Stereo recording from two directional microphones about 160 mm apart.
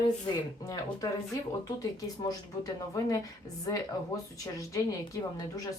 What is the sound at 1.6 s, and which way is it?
Speech, 20° left (ahead or behind).